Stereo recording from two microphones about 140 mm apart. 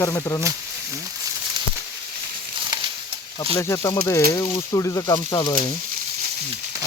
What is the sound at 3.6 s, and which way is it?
Speech, 20° left (ahead or behind).